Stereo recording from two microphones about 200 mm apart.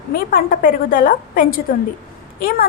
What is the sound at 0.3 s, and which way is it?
A woman's voice, 45° left (ahead or behind).